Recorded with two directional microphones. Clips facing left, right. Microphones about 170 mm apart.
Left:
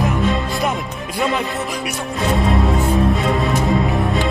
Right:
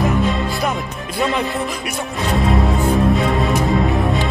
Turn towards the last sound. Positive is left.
turn(degrees=0)  # may be behind; listen again after turning